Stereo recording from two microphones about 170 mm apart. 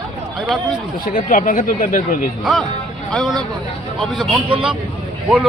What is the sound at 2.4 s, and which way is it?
A man's voice, centre (ahead or behind).